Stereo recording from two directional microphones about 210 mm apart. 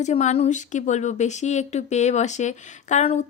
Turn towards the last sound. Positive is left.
turn(degrees=30)  # may be behind; listen again after turning